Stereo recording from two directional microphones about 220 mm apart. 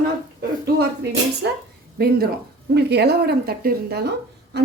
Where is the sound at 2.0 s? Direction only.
45° right (ahead or behind).